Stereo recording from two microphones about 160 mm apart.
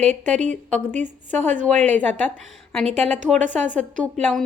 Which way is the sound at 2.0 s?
10° left (ahead or behind).